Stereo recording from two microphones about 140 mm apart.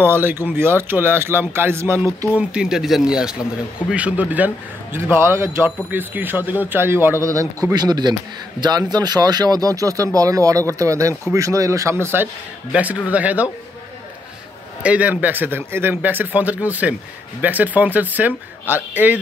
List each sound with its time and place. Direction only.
0.0 s speech: 15° right (ahead or behind)
2.3 s a man's voice: 5° right (ahead or behind)
14.8 s speech: 10° right (ahead or behind)